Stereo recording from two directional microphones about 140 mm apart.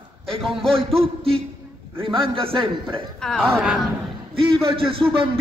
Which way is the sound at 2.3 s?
40° right (ahead or behind).